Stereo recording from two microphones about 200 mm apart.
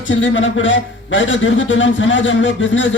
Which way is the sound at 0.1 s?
70° left (ahead or behind).